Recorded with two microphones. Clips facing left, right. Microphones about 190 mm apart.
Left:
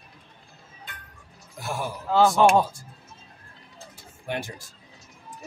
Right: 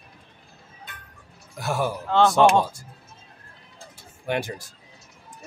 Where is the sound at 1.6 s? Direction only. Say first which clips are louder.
Right 5 dB; 75° right (ahead or behind).